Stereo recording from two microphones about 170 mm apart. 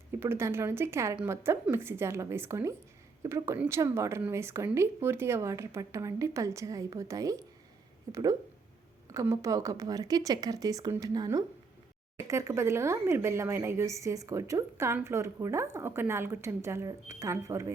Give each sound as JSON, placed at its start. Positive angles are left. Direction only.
{"t": 0.2, "sound": "a woman's voice", "side_deg": -15}